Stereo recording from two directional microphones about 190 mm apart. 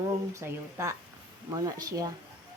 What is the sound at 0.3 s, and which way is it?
A woman's voice, 15° right (ahead or behind).